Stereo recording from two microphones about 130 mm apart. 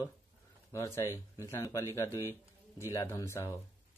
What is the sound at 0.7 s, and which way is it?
A man's voice, 20° left (ahead or behind).